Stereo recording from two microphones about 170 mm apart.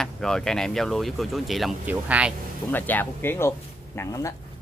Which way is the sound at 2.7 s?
10° left (ahead or behind).